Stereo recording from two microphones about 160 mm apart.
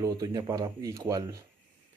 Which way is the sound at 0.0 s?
20° right (ahead or behind).